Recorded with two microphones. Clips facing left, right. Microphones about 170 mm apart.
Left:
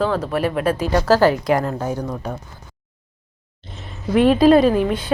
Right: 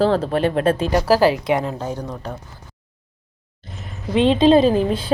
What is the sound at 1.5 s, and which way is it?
Speech, centre (ahead or behind).